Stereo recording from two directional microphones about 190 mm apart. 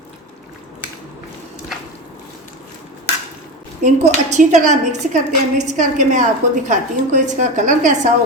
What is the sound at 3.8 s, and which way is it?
A woman's voice, 40° right (ahead or behind).